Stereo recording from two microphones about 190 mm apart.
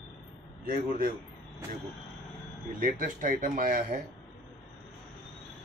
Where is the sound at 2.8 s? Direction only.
50° right (ahead or behind).